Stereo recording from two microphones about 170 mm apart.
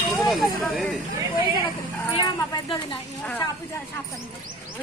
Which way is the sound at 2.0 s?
25° left (ahead or behind).